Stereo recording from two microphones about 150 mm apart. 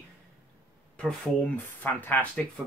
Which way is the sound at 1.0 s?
5° left (ahead or behind).